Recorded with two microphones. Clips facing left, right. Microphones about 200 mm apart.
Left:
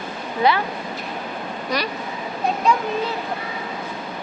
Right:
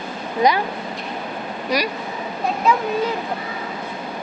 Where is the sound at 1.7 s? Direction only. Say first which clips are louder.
Right 3 dB; 10° right (ahead or behind).